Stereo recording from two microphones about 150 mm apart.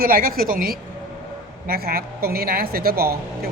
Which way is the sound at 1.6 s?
90° right.